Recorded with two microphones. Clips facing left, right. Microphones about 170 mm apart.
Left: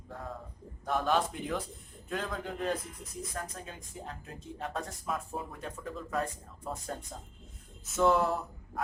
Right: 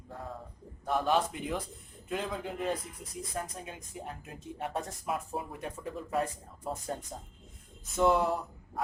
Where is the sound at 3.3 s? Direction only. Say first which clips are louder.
Right 5 dB; 15° right (ahead or behind).